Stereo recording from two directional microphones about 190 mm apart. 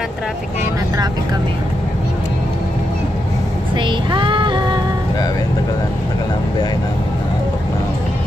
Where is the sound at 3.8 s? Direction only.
25° right (ahead or behind).